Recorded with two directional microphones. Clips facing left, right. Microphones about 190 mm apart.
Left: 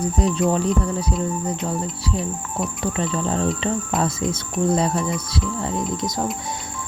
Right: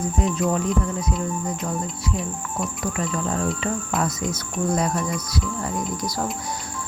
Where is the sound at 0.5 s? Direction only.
30° left (ahead or behind).